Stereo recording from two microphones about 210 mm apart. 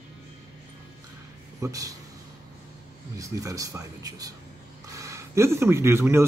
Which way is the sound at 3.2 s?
15° right (ahead or behind).